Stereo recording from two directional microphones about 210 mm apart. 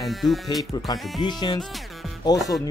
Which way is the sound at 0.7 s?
20° left (ahead or behind).